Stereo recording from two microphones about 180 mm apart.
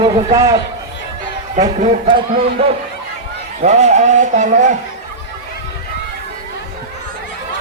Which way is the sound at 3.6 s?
40° right (ahead or behind).